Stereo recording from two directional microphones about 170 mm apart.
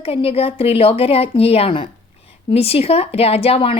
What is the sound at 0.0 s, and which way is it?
Speech, 35° left (ahead or behind).